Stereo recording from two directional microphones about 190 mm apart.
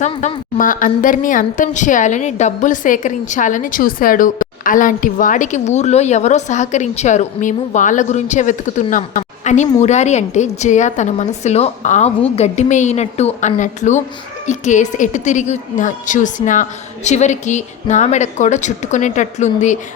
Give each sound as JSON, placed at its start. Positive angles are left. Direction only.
{"t": 0.2, "sound": "a woman's voice", "side_deg": 30}
{"t": 0.6, "sound": "a woman's voice", "side_deg": 45}